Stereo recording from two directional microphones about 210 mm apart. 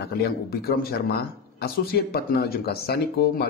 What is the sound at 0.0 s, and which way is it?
A man's voice, 45° left (ahead or behind).